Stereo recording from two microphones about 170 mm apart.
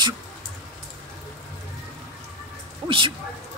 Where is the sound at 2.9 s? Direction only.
30° right (ahead or behind).